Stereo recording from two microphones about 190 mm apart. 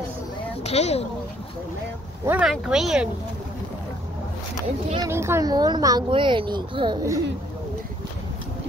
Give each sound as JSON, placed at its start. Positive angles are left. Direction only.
{"t": 0.7, "sound": "speech", "side_deg": 35}
{"t": 2.2, "sound": "speech", "side_deg": -5}
{"t": 4.9, "sound": "a woman's voice", "side_deg": -15}